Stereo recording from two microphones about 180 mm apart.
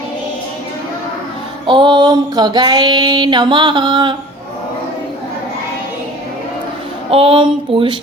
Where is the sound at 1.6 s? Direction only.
25° right (ahead or behind).